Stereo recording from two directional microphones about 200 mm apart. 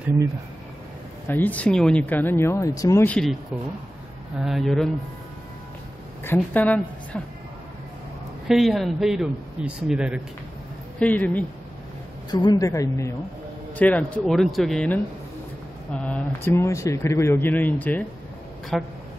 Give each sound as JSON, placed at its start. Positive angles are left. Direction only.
{"t": 1.2, "sound": "speech", "side_deg": 10}
{"t": 4.4, "sound": "speech", "side_deg": 0}
{"t": 6.2, "sound": "speech", "side_deg": 10}
{"t": 8.5, "sound": "speech", "side_deg": 0}
{"t": 11.0, "sound": "speech", "side_deg": 5}
{"t": 12.3, "sound": "speech", "side_deg": 20}